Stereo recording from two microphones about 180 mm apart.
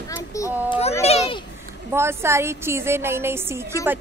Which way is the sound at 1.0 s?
35° left (ahead or behind).